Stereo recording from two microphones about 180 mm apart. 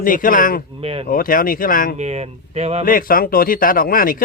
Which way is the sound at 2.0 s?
35° right (ahead or behind).